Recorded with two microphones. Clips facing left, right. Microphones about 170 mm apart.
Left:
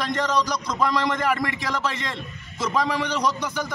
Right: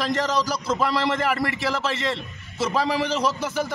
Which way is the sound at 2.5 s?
5° right (ahead or behind).